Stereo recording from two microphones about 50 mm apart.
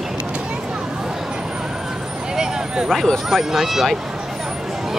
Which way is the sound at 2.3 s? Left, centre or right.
Centre.